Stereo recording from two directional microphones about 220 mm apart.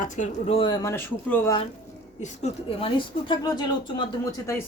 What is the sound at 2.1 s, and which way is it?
Speech, 30° left (ahead or behind).